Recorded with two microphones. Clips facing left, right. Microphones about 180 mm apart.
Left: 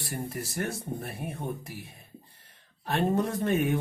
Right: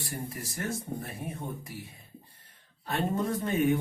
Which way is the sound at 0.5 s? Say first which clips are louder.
Even; 65° left (ahead or behind).